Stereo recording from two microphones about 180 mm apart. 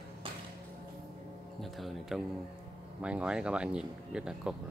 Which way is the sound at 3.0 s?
5° right (ahead or behind).